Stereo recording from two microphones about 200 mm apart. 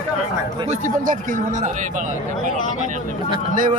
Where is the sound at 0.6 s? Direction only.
40° right (ahead or behind).